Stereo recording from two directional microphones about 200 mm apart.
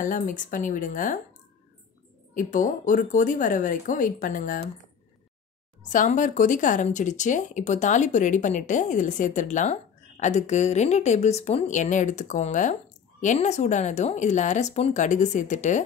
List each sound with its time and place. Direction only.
0.0 s speech: 40° left (ahead or behind)
2.3 s speech: 40° left (ahead or behind)
5.9 s speech: 40° left (ahead or behind)